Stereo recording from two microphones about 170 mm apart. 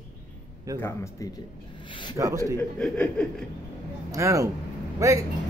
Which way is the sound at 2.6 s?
5° left (ahead or behind).